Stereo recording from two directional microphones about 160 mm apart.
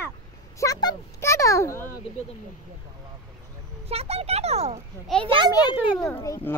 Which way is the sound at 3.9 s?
40° right (ahead or behind).